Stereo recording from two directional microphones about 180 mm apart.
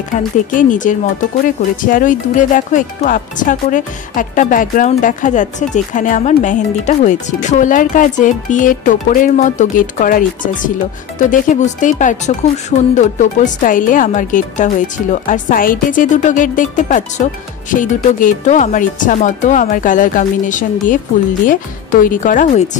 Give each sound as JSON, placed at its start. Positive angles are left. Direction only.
{"t": 0.1, "sound": "speech", "side_deg": 45}
{"t": 22.0, "sound": "speech", "side_deg": 45}